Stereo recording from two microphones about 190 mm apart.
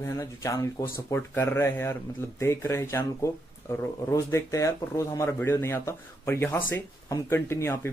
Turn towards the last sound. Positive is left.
turn(degrees=15)  # may be behind; listen again after turning